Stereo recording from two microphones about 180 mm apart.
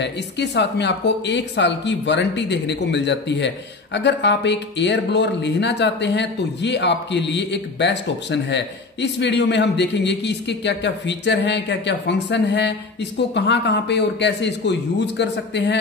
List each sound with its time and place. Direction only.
0.0 s speech: 75° left (ahead or behind)